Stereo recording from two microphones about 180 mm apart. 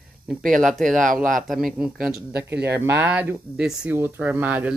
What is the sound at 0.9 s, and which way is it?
Speech, 45° right (ahead or behind).